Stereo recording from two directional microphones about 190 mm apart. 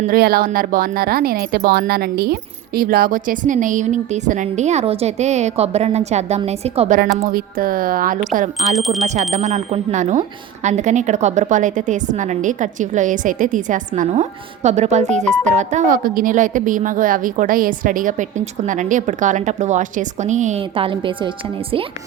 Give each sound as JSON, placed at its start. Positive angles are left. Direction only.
{"t": 0.0, "sound": "speech", "side_deg": -50}
{"t": 7.3, "sound": "speech", "side_deg": -50}
{"t": 8.7, "sound": "speech", "side_deg": 0}
{"t": 9.0, "sound": "speech", "side_deg": -35}